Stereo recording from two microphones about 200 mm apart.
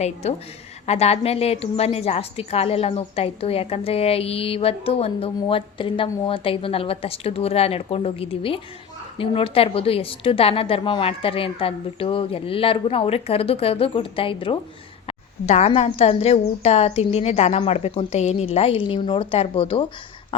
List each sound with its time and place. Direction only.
0.0 s a woman's voice: 35° left (ahead or behind)